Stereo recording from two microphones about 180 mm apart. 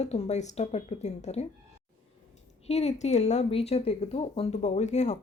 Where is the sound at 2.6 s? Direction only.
35° left (ahead or behind).